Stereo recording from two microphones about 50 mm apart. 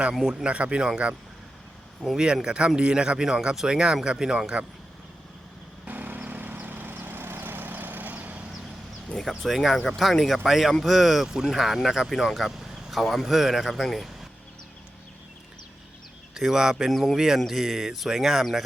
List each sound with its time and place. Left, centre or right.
0.1 s speech: centre
0.4 s speech: right
2.1 s speech: centre
5.9 s vehicle: right
9.4 s speech: centre
16.3 s speech: centre
16.9 s speech: centre
17.2 s speech: centre